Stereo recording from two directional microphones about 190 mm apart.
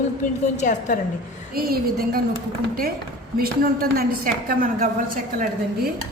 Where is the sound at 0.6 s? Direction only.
40° left (ahead or behind).